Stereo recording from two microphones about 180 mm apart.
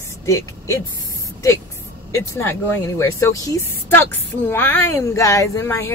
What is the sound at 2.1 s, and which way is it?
Speech, 15° left (ahead or behind).